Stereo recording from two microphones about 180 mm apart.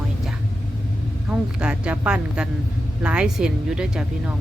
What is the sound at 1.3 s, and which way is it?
Speech, 5° right (ahead or behind).